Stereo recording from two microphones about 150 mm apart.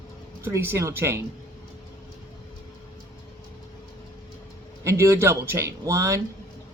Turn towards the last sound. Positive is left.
turn(degrees=-20)  # may be behind; listen again after turning